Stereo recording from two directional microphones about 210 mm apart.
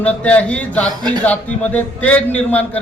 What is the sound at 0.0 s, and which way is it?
A man's voice, 5° left (ahead or behind).